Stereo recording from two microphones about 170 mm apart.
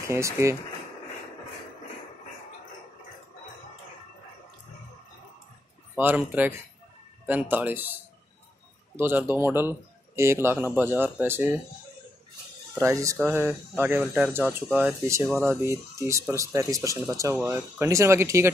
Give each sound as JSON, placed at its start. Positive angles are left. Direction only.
{"t": 0.0, "sound": "speech", "side_deg": -15}
{"t": 5.9, "sound": "speech", "side_deg": -10}
{"t": 12.7, "sound": "speech", "side_deg": -20}